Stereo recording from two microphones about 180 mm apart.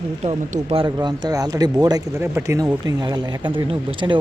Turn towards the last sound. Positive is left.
turn(degrees=-25)  # may be behind; listen again after turning